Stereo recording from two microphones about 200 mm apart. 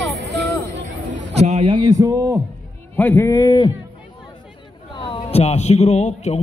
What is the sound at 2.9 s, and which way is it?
Speech, 10° left (ahead or behind).